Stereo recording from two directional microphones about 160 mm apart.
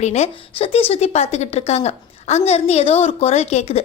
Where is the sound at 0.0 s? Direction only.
45° left (ahead or behind).